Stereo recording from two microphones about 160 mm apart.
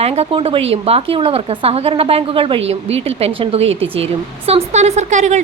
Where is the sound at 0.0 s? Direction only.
35° right (ahead or behind).